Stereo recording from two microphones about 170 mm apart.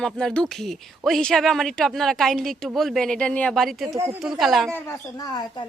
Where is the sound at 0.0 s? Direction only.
5° left (ahead or behind).